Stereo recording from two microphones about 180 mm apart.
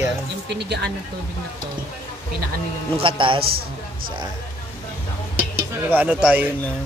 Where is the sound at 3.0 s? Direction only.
30° right (ahead or behind).